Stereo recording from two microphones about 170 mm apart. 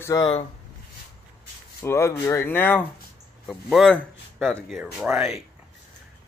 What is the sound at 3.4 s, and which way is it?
Speech, centre (ahead or behind).